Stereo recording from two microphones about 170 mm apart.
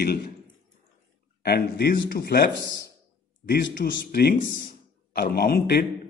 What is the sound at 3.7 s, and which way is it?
A man's voice, 60° left (ahead or behind).